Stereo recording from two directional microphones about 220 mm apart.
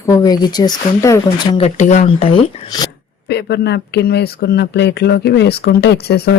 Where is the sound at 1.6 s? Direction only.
30° left (ahead or behind).